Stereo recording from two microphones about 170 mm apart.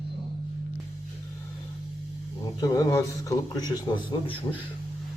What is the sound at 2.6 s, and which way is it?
Speech, 20° left (ahead or behind).